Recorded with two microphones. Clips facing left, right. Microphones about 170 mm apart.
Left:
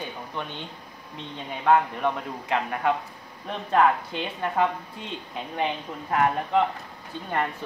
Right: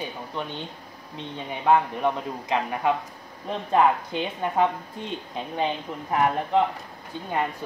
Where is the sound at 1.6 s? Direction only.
15° right (ahead or behind).